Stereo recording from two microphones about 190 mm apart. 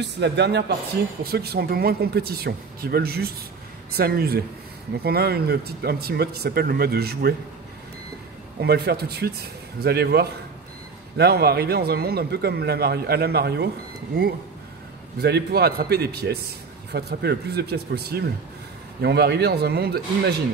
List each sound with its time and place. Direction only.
0.0 s a man's voice: 65° right (ahead or behind)
8.5 s a man's voice: 55° right (ahead or behind)
15.1 s a man's voice: 60° right (ahead or behind)